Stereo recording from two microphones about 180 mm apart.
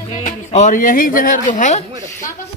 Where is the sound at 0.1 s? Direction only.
40° left (ahead or behind).